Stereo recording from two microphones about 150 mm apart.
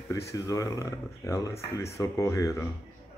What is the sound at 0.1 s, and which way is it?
Speech, 20° left (ahead or behind).